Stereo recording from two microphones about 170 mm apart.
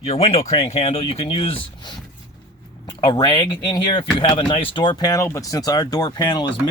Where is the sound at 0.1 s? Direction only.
35° left (ahead or behind).